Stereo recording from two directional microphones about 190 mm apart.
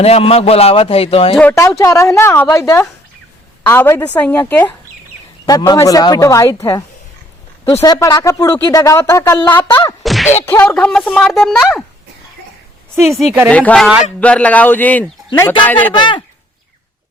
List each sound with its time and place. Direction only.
0.0 s speech: 30° left (ahead or behind)
1.4 s speech: 10° left (ahead or behind)
10.0 s whack: centre (ahead or behind)
10.4 s speech: 10° left (ahead or behind)
13.1 s speech: centre (ahead or behind)
16.0 s speech: 25° left (ahead or behind)